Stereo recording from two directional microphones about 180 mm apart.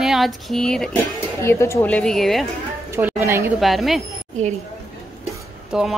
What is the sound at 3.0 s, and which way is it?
Speech, 15° right (ahead or behind).